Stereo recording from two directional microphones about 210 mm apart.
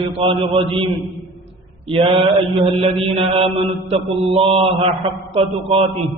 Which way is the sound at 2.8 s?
25° right (ahead or behind).